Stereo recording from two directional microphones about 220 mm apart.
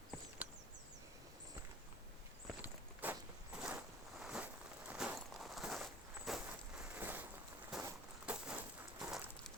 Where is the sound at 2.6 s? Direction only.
5° right (ahead or behind).